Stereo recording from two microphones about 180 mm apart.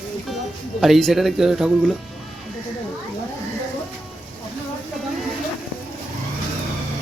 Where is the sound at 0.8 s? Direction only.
Centre (ahead or behind).